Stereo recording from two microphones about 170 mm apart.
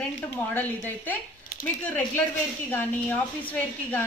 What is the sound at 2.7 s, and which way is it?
Speech, 10° left (ahead or behind).